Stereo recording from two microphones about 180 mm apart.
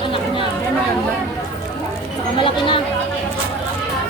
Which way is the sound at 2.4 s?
30° left (ahead or behind).